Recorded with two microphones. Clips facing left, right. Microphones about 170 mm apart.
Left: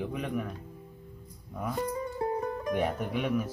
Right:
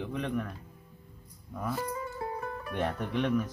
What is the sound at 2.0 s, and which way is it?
Music, 20° left (ahead or behind).